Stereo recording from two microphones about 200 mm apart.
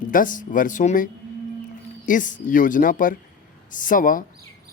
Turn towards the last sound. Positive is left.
turn(degrees=40)  # may be behind; listen again after turning